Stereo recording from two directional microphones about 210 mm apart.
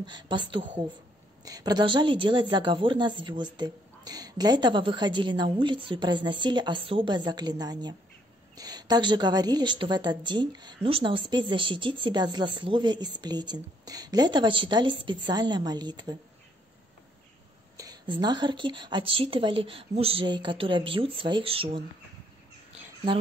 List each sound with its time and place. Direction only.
0.0 s a woman's voice: 20° right (ahead or behind)
17.7 s a woman's voice: 20° right (ahead or behind)